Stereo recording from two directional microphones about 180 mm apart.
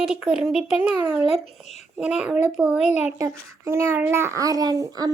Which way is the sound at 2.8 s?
40° left (ahead or behind).